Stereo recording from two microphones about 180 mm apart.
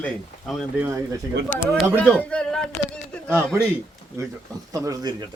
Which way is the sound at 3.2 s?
10° right (ahead or behind).